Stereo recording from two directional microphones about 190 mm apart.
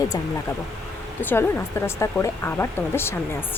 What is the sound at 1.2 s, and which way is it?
Speech, 10° left (ahead or behind).